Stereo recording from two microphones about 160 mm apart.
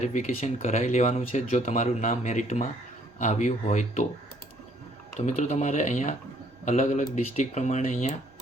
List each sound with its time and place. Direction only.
0.0 s speech: 50° left (ahead or behind)
5.2 s speech: 45° left (ahead or behind)